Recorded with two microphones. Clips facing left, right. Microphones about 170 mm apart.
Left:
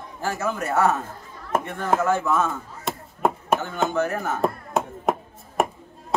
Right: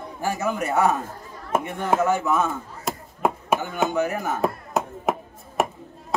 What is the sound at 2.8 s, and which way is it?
Chop, centre (ahead or behind).